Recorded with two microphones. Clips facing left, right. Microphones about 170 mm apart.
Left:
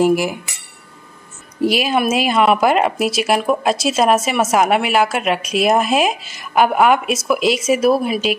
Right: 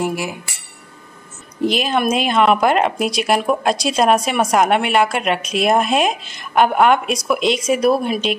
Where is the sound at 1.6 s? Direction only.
10° left (ahead or behind).